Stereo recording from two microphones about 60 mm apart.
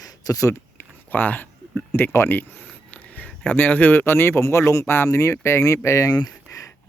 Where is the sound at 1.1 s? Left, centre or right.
Left.